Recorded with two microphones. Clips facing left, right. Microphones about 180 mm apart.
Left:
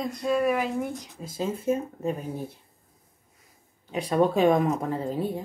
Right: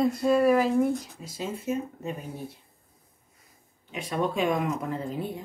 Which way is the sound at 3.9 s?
35° left (ahead or behind).